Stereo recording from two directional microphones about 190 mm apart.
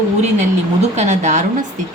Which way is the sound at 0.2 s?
35° right (ahead or behind).